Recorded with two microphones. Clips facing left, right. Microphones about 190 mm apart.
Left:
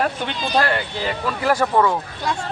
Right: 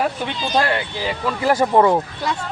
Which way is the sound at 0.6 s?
10° right (ahead or behind).